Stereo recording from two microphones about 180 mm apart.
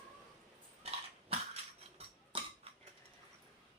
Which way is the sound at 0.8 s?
35° right (ahead or behind).